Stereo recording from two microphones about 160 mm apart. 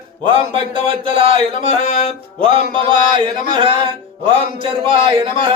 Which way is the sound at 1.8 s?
45° left (ahead or behind).